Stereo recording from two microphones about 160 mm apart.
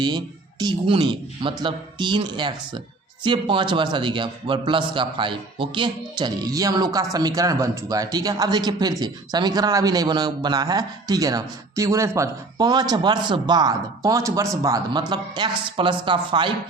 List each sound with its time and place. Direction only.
0.6 s a man's voice: 30° right (ahead or behind)